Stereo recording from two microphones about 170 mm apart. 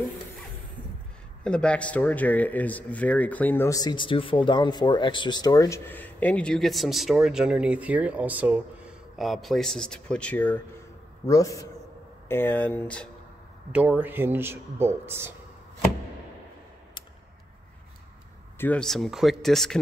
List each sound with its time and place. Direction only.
1.4 s a man's voice: 5° left (ahead or behind)
13.7 s speech: 10° right (ahead or behind)
18.6 s speech: 5° left (ahead or behind)